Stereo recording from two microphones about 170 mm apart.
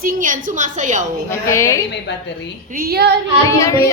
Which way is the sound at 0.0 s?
55° right (ahead or behind).